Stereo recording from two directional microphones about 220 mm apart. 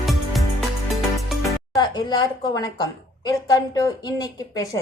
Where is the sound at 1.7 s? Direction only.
20° left (ahead or behind).